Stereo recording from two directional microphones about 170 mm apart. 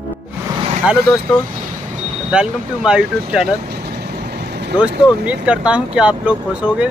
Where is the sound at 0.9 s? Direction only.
5° right (ahead or behind).